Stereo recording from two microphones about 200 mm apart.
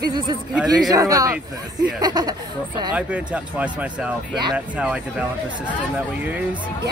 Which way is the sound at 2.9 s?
5° right (ahead or behind).